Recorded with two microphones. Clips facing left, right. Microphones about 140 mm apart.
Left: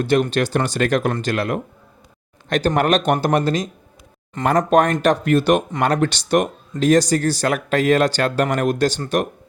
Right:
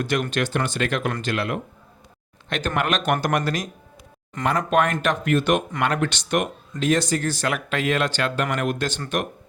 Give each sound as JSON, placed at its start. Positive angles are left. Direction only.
{"t": 0.0, "sound": "speech", "side_deg": 30}
{"t": 4.4, "sound": "speech", "side_deg": 40}